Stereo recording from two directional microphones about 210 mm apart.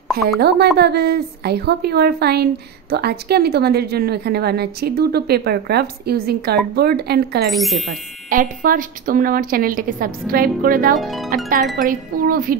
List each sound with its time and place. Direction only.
0.2 s a woman's voice: 45° right (ahead or behind)
7.4 s speech: centre (ahead or behind)
8.3 s a woman's voice: 40° right (ahead or behind)
11.0 s speech: centre (ahead or behind)
11.8 s wind chime: 40° right (ahead or behind)